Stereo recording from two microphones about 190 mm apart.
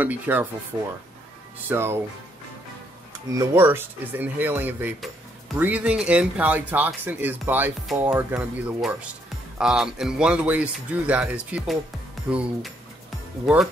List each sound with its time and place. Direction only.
0.0 s speech: 10° right (ahead or behind)
3.3 s speech: 15° right (ahead or behind)